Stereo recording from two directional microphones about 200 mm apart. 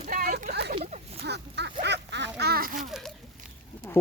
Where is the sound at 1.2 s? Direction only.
60° right (ahead or behind).